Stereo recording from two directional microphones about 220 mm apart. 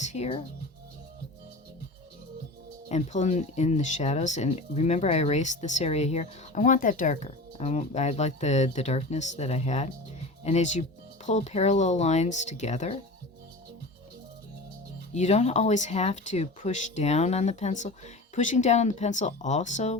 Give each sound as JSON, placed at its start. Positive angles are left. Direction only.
{"t": 0.0, "sound": "speech", "side_deg": 30}
{"t": 2.9, "sound": "speech", "side_deg": 30}
{"t": 15.1, "sound": "speech", "side_deg": 30}